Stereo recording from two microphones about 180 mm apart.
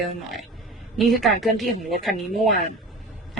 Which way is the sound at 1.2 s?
Centre (ahead or behind).